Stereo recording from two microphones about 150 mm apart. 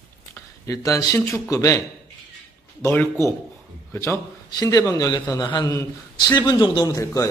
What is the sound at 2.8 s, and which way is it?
A man's voice, 15° left (ahead or behind).